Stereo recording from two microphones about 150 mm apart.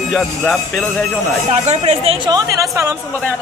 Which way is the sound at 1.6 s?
45° right (ahead or behind).